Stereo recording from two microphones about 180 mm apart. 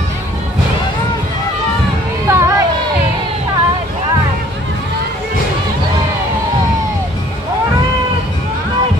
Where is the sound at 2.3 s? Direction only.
15° right (ahead or behind).